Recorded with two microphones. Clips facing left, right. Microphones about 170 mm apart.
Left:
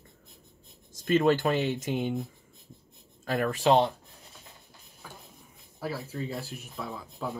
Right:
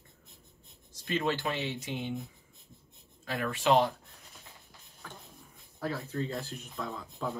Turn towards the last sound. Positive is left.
turn(degrees=10)  # may be behind; listen again after turning